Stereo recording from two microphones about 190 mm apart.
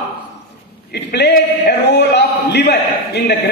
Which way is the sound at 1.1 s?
60° left (ahead or behind).